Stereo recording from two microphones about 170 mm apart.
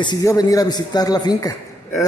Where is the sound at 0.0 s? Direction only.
20° left (ahead or behind).